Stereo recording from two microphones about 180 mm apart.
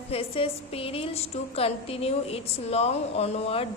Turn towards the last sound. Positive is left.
turn(degrees=35)  # may be behind; listen again after turning